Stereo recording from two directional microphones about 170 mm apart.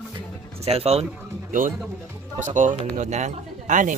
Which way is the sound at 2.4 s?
45° right (ahead or behind).